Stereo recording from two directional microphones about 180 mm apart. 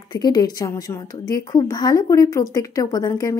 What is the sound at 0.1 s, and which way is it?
A woman's voice, 25° left (ahead or behind).